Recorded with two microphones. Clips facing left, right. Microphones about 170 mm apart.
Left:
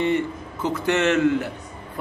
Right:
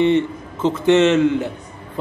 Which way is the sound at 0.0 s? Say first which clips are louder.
Right 6 dB; 20° right (ahead or behind).